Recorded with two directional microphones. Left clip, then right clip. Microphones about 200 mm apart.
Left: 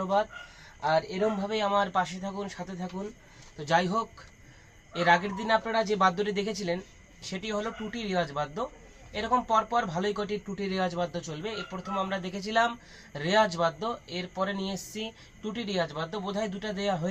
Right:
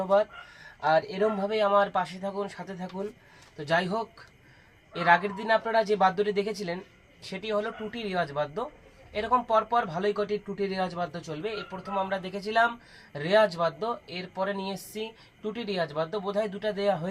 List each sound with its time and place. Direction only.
0.8 s speech: 10° right (ahead or behind)